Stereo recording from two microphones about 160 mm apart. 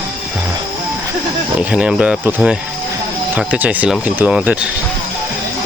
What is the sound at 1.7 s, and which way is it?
Speech, 5° right (ahead or behind).